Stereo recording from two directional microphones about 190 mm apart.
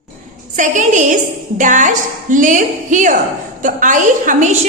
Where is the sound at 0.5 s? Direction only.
40° right (ahead or behind).